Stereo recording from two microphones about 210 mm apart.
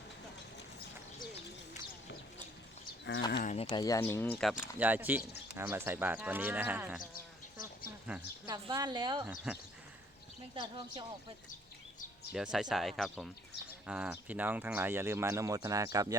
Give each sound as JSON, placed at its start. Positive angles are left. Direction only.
{"t": 3.1, "sound": "speech", "side_deg": 55}
{"t": 3.4, "sound": "speech", "side_deg": 30}
{"t": 3.7, "sound": "speech", "side_deg": 20}
{"t": 8.4, "sound": "speech", "side_deg": -20}
{"t": 9.5, "sound": "speech", "side_deg": -5}
{"t": 10.5, "sound": "speech", "side_deg": -20}
{"t": 12.3, "sound": "speech", "side_deg": -5}